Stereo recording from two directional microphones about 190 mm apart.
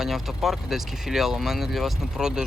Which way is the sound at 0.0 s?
Centre (ahead or behind).